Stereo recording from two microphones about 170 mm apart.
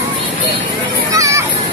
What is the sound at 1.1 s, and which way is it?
Children playing, 20° right (ahead or behind).